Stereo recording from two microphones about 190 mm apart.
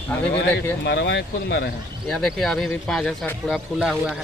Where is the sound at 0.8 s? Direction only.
70° left (ahead or behind).